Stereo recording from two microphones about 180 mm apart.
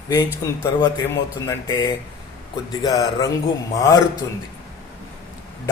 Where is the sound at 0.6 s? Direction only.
20° left (ahead or behind).